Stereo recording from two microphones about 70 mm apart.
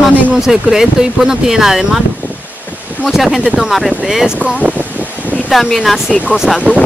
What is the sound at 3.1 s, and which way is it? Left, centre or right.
Speech, centre.